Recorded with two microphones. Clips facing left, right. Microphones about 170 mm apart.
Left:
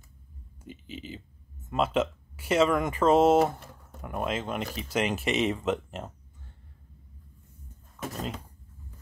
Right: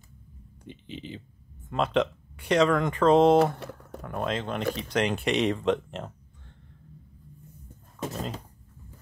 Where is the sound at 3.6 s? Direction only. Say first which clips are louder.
Right 10 dB; 75° right (ahead or behind).